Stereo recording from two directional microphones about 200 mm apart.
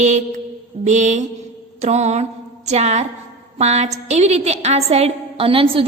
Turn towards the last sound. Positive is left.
turn(degrees=-30)  # may be behind; listen again after turning